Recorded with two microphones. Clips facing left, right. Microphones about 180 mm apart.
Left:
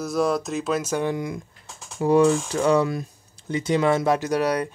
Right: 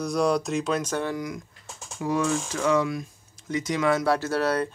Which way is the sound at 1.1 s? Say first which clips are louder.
Left 3 dB; 25° left (ahead or behind).